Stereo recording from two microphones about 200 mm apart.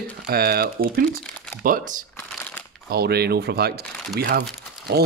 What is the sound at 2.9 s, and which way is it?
Speech, 50° right (ahead or behind).